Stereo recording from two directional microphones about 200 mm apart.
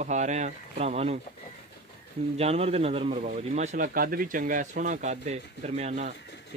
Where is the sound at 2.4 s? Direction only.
30° right (ahead or behind).